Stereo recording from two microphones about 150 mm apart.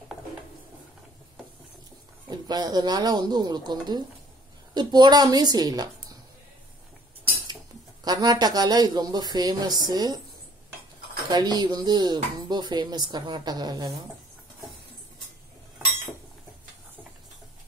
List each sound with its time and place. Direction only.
2.2 s speech: 25° right (ahead or behind)
8.0 s speech: 25° right (ahead or behind)
11.2 s speech: 30° right (ahead or behind)